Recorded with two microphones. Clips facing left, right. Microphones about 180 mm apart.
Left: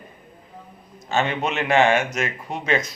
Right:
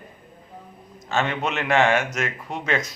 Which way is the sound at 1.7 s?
30° left (ahead or behind).